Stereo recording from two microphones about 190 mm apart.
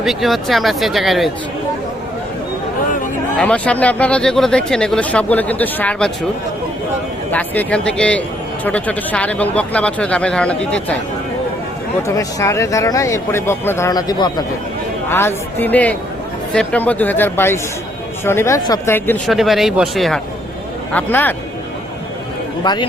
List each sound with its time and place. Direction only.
0.0 s speech: centre (ahead or behind)
3.3 s speech: 5° left (ahead or behind)
7.3 s speech: 10° left (ahead or behind)
12.0 s speech: 15° left (ahead or behind)
22.6 s speech: 25° left (ahead or behind)